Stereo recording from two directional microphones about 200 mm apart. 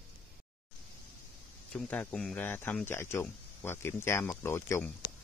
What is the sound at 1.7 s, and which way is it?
Speech, 5° left (ahead or behind).